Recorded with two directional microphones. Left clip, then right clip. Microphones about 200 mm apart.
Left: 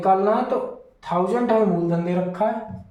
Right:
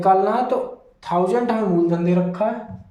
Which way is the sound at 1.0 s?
55° right (ahead or behind).